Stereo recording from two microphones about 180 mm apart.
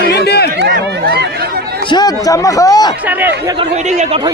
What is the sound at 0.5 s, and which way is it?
Speech, 65° right (ahead or behind).